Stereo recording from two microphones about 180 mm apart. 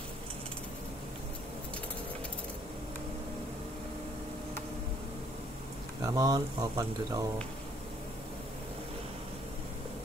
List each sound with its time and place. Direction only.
6.0 s speech: 20° right (ahead or behind)